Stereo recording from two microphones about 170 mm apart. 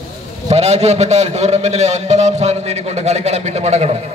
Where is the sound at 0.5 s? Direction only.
40° right (ahead or behind).